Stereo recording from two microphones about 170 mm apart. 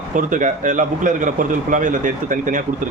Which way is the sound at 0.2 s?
50° right (ahead or behind).